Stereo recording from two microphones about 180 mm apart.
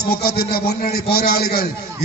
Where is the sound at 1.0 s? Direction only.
60° left (ahead or behind).